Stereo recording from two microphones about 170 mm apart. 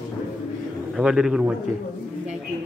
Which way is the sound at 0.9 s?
5° right (ahead or behind).